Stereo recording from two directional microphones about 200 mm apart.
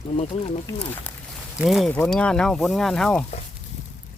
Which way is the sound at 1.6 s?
Centre (ahead or behind).